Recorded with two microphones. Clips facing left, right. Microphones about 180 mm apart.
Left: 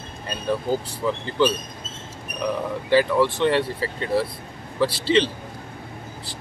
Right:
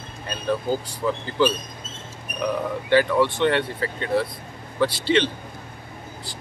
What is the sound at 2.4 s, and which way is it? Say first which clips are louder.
Speech: right 1 dB; centre (ahead or behind).